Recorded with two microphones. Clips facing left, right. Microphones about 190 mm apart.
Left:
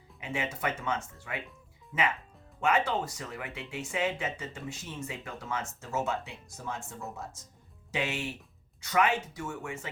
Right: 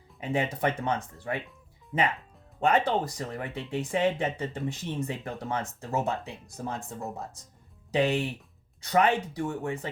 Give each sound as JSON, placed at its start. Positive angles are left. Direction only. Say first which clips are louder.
{"t": 0.2, "sound": "speech", "louder": "right 6 dB", "side_deg": -35}
{"t": 7.9, "sound": "speech", "louder": "right 8 dB", "side_deg": -35}